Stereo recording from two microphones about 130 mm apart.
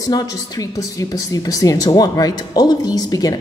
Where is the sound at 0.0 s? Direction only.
30° left (ahead or behind).